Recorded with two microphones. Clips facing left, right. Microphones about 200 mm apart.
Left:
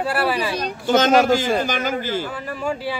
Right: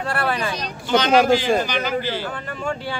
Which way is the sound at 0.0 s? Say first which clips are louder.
Left 2 dB; 5° left (ahead or behind).